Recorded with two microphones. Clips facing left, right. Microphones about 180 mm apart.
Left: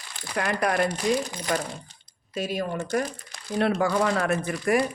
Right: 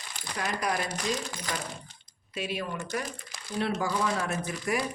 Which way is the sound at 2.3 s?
40° left (ahead or behind).